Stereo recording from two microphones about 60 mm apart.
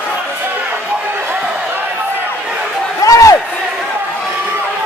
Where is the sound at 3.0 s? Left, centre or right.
Left.